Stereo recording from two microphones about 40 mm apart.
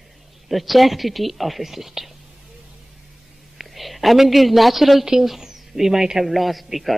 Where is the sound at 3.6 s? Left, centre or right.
Centre.